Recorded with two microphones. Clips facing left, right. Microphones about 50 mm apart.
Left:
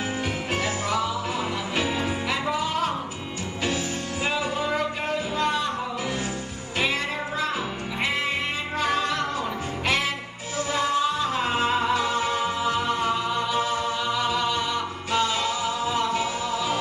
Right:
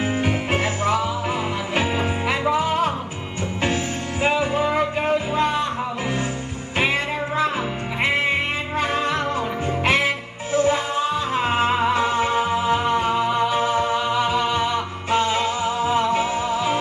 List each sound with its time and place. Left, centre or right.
0.2 s music: right
4.2 s music: right
8.0 s music: right